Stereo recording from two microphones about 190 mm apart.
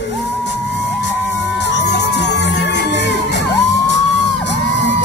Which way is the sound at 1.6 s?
65° left (ahead or behind).